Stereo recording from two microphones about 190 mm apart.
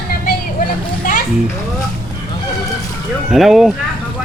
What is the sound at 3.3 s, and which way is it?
Speech, centre (ahead or behind).